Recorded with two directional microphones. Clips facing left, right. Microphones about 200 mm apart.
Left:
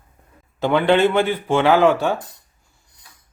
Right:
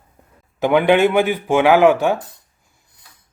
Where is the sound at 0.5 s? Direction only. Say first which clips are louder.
Right 2 dB; 15° right (ahead or behind).